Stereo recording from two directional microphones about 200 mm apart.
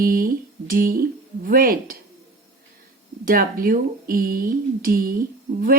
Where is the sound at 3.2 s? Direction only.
45° right (ahead or behind).